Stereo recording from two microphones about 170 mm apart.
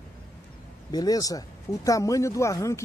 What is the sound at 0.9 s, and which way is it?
Speech, 20° left (ahead or behind).